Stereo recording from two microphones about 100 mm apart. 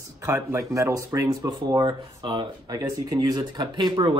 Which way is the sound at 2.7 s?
40° right (ahead or behind).